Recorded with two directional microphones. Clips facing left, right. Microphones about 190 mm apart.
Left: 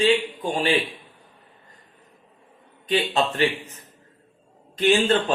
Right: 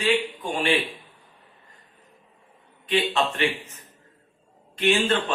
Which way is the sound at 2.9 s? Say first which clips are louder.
Left 1 dB; 35° left (ahead or behind).